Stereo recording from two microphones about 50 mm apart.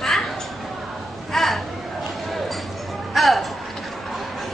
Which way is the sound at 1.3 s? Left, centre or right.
Centre.